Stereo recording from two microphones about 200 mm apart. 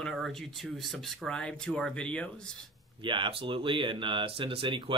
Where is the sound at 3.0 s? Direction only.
25° right (ahead or behind).